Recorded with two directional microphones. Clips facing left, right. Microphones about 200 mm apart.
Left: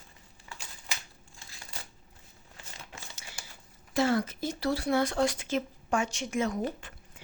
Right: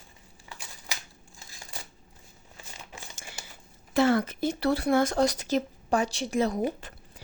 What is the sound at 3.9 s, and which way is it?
Speech, 60° right (ahead or behind).